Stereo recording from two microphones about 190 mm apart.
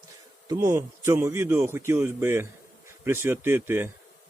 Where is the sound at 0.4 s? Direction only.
15° right (ahead or behind).